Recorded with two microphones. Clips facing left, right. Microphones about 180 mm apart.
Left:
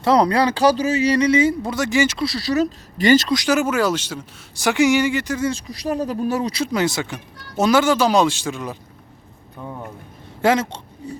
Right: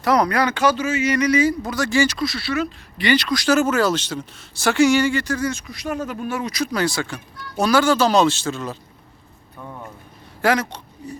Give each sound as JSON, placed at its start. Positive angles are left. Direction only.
{"t": 0.0, "sound": "speech", "side_deg": 30}
{"t": 3.2, "sound": "speech", "side_deg": 20}
{"t": 5.5, "sound": "speech", "side_deg": 35}
{"t": 10.4, "sound": "a sound", "side_deg": 25}